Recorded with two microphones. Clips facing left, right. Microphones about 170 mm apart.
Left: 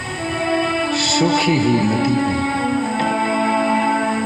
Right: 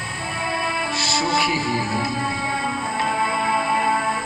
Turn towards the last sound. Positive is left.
turn(degrees=60)  # may be behind; listen again after turning